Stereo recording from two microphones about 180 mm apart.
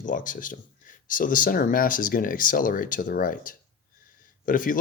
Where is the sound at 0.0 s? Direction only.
45° left (ahead or behind).